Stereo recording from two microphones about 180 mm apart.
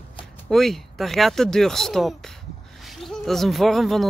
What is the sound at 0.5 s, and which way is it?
Speech, centre (ahead or behind).